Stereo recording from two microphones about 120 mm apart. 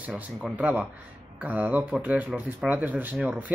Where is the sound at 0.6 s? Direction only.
15° right (ahead or behind).